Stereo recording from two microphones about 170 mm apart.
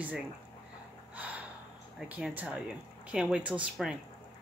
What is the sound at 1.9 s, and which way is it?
A woman's voice, 5° right (ahead or behind).